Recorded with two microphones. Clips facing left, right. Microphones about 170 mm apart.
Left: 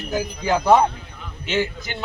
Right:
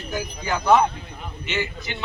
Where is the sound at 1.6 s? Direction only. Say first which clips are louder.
Left 5 dB; 40° left (ahead or behind).